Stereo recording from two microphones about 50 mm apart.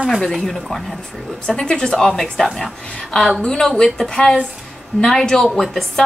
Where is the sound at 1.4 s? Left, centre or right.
Centre.